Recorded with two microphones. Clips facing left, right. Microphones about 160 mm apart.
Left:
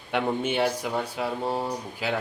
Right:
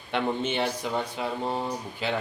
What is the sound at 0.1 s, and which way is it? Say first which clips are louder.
Speech: left 1 dB; 10° left (ahead or behind).